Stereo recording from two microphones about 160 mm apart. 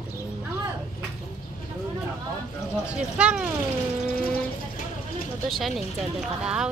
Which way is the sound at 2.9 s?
5° right (ahead or behind).